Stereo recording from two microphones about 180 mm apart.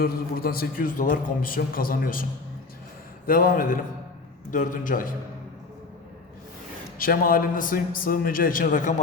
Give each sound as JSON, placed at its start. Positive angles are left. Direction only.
{"t": 0.0, "sound": "a man's voice", "side_deg": 55}
{"t": 3.2, "sound": "a man's voice", "side_deg": 55}
{"t": 7.0, "sound": "a man's voice", "side_deg": 50}